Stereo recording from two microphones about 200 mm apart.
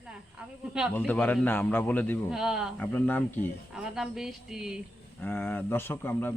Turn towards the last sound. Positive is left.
turn(degrees=10)  # may be behind; listen again after turning